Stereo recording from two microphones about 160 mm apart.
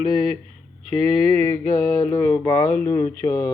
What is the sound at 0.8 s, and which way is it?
Speech, 40° right (ahead or behind).